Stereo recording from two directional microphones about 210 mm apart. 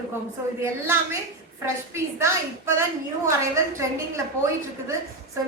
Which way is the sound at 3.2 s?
15° right (ahead or behind).